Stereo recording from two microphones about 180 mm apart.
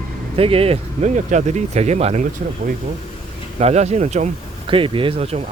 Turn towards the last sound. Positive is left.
turn(degrees=-35)  # may be behind; listen again after turning